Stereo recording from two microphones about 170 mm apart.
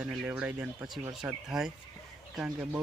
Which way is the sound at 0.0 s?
5° right (ahead or behind).